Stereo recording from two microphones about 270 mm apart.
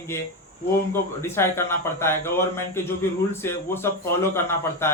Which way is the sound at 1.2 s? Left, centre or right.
Centre.